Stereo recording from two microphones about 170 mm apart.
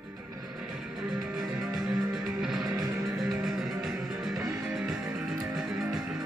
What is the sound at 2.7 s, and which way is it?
Music, 20° right (ahead or behind).